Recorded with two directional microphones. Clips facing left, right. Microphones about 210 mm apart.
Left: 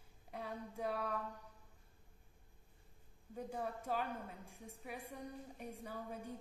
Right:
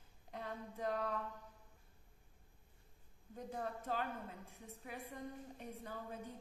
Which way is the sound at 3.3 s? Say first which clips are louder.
Left 1 dB; 10° left (ahead or behind).